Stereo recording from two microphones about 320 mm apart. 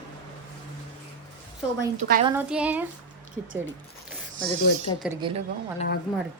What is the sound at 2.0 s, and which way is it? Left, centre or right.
Speech, right.